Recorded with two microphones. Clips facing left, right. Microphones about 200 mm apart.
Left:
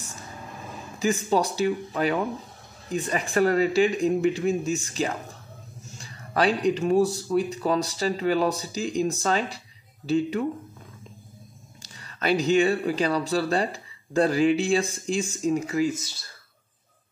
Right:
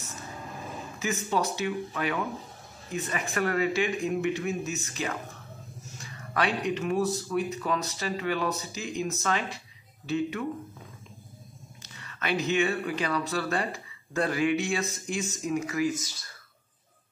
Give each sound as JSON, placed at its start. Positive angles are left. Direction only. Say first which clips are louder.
{"t": 0.9, "sound": "speech", "louder": "left 6 dB", "side_deg": 35}
{"t": 11.8, "sound": "speech", "louder": "left 7 dB", "side_deg": 35}